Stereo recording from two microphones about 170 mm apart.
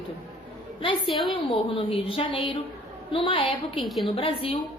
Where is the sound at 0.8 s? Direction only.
30° left (ahead or behind).